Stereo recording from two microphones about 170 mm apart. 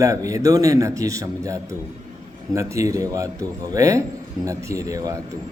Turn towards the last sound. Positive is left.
turn(degrees=-20)  # may be behind; listen again after turning